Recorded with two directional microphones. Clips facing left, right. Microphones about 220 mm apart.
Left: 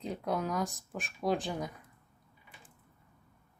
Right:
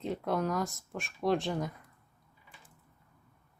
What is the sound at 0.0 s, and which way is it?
Speech, centre (ahead or behind).